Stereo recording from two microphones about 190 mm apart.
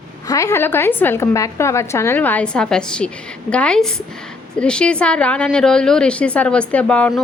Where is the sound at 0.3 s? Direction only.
15° left (ahead or behind).